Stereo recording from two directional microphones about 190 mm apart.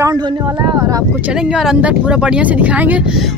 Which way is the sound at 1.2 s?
5° right (ahead or behind).